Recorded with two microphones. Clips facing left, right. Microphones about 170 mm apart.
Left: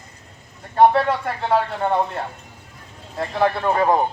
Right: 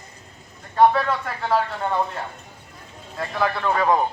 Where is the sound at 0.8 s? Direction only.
30° left (ahead or behind).